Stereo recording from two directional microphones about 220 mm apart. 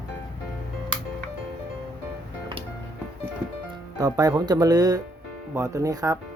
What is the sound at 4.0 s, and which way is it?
Speech, 15° right (ahead or behind).